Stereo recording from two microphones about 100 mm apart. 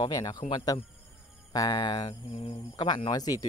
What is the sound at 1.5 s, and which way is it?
Speech, 40° left (ahead or behind).